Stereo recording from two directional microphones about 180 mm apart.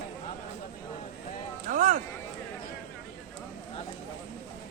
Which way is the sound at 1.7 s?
45° right (ahead or behind).